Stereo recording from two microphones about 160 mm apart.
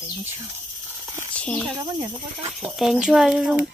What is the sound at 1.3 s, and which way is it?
Speech, 5° left (ahead or behind).